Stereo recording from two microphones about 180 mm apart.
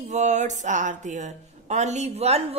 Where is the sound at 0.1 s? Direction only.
40° right (ahead or behind).